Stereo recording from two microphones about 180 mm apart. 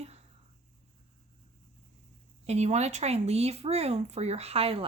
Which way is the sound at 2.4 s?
40° right (ahead or behind).